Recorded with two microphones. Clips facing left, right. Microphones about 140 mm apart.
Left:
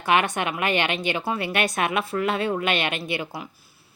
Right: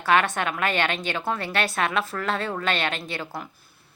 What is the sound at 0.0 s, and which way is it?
A woman's voice, 15° left (ahead or behind).